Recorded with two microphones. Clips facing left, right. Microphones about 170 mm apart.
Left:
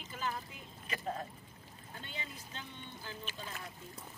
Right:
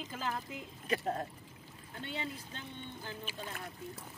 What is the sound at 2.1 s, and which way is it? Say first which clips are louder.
Speech: right 7 dB; 60° right (ahead or behind).